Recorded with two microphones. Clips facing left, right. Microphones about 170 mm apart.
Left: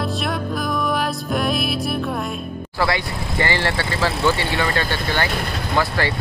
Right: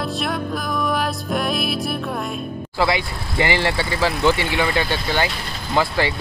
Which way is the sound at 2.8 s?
15° right (ahead or behind).